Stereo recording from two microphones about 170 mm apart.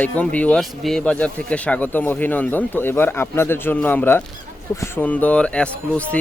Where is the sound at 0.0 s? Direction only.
10° left (ahead or behind).